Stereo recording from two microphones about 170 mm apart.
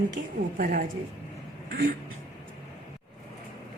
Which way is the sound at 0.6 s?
55° right (ahead or behind).